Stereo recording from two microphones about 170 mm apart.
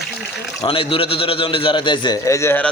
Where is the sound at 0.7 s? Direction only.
30° left (ahead or behind).